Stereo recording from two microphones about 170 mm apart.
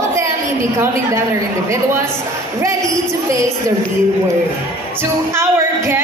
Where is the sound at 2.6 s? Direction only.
20° right (ahead or behind).